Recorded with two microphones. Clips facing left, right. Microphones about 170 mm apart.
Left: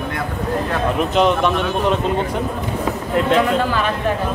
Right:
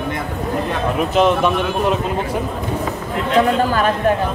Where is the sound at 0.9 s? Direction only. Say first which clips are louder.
Right 2 dB; 5° right (ahead or behind).